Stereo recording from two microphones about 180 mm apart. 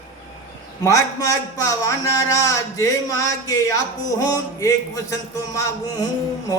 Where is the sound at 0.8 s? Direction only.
15° left (ahead or behind).